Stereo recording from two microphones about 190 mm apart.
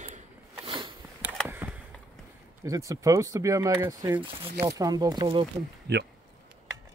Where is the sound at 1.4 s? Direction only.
10° right (ahead or behind).